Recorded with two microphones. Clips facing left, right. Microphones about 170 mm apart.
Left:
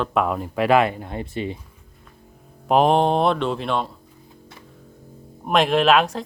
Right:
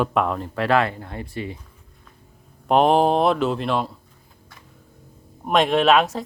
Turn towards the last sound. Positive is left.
turn(degrees=0)  # may be behind; listen again after turning